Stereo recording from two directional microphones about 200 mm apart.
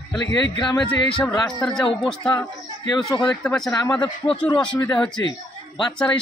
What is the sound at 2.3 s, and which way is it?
Speech, 20° left (ahead or behind).